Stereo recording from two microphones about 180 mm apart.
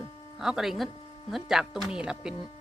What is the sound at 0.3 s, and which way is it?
Speech, centre (ahead or behind).